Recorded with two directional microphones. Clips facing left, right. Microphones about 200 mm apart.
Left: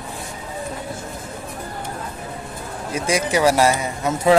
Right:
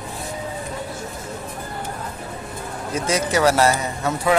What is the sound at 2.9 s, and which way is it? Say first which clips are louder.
Speech: left 1 dB; 15° left (ahead or behind).